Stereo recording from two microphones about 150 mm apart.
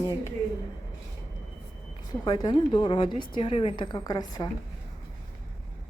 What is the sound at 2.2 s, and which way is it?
A woman's voice, 30° left (ahead or behind).